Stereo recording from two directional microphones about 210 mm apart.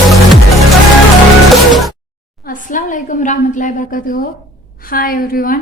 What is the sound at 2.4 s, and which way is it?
A woman's voice, 40° left (ahead or behind).